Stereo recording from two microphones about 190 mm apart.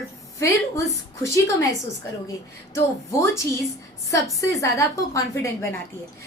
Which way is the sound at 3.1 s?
15° left (ahead or behind).